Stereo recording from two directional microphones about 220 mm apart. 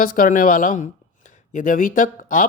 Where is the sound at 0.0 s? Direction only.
40° left (ahead or behind).